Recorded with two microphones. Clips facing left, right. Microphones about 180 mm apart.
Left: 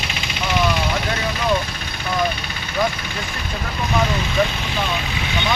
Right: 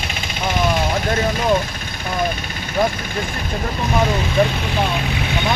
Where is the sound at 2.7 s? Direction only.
45° right (ahead or behind).